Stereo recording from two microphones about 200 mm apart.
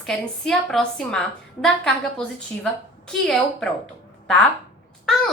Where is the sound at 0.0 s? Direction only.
Centre (ahead or behind).